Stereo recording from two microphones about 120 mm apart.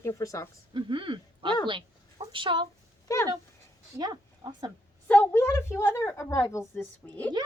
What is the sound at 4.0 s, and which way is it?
Speech, 35° right (ahead or behind).